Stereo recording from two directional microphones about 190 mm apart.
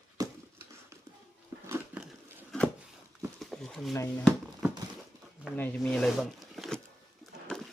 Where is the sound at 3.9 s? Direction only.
15° left (ahead or behind).